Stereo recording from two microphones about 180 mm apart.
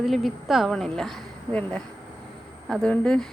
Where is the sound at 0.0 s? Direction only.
Centre (ahead or behind).